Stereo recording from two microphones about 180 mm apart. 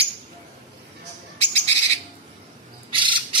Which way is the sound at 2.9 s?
25° right (ahead or behind).